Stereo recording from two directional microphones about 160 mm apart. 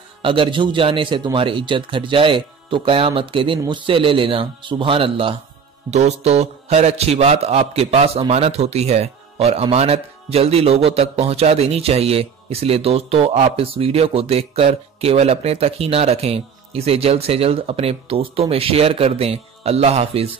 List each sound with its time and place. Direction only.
0.2 s a man's voice: 30° right (ahead or behind)